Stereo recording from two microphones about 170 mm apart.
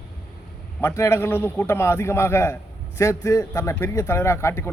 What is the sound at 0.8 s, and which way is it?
A man's voice, 15° left (ahead or behind).